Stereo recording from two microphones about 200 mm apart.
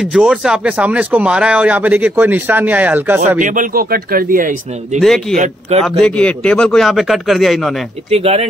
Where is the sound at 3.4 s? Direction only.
40° right (ahead or behind).